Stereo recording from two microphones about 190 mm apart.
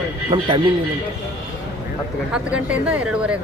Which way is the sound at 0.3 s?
25° right (ahead or behind).